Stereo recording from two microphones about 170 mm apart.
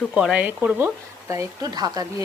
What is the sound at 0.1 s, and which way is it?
Speech, 5° right (ahead or behind).